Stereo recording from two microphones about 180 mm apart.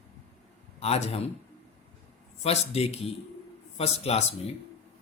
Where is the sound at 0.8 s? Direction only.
35° left (ahead or behind).